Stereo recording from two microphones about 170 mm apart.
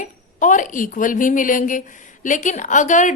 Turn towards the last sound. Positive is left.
turn(degrees=45)  # may be behind; listen again after turning